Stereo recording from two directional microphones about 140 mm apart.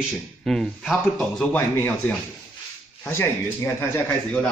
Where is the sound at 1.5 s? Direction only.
10° left (ahead or behind).